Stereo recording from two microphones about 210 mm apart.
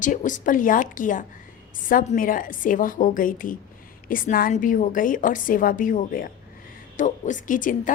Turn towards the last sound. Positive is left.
turn(degrees=40)  # may be behind; listen again after turning